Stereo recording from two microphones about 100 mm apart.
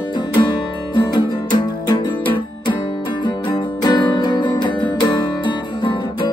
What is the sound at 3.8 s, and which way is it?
Music, 45° left (ahead or behind).